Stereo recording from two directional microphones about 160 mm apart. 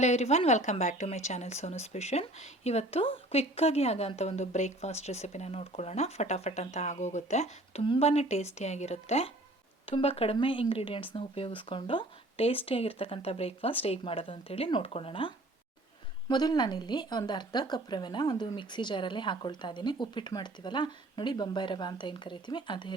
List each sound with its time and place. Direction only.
0.0 s a woman's voice: 45° left (ahead or behind)
16.3 s speech: 25° left (ahead or behind)